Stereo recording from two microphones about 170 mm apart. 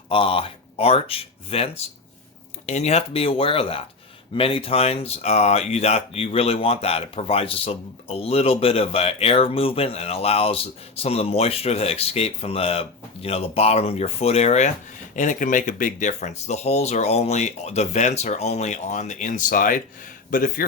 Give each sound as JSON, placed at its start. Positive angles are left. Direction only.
{"t": 0.1, "sound": "speech", "side_deg": 30}